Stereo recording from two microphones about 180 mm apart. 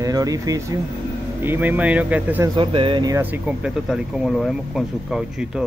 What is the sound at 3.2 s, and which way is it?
Speech, 10° right (ahead or behind).